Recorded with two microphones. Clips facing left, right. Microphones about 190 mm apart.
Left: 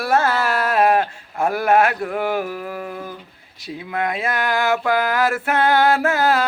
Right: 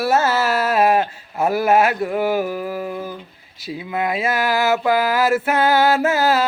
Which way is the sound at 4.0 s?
5° right (ahead or behind).